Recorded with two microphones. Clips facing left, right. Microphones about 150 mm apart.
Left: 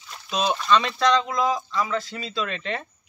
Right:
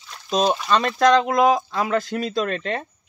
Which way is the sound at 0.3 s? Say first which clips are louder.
Right 2 dB; 40° right (ahead or behind).